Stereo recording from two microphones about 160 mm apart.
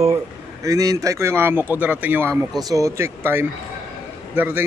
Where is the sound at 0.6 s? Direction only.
20° right (ahead or behind).